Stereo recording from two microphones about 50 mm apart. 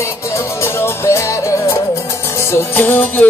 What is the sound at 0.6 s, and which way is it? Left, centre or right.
Music, left.